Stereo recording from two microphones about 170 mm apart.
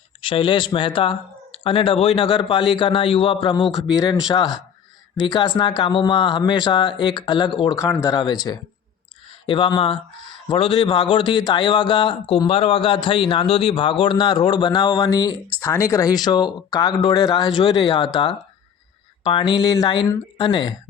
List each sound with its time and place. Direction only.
0.2 s a man's voice: 30° left (ahead or behind)
3.7 s speech: centre (ahead or behind)
4.3 s a man's voice: 20° left (ahead or behind)